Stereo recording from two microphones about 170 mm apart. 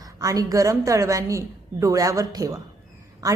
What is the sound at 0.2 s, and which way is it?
A woman's voice, 20° right (ahead or behind).